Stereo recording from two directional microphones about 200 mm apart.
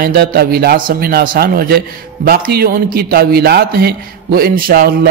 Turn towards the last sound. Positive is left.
turn(degrees=-50)  # may be behind; listen again after turning